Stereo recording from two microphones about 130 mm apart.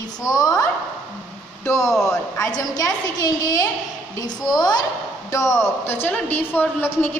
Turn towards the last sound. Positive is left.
turn(degrees=15)  # may be behind; listen again after turning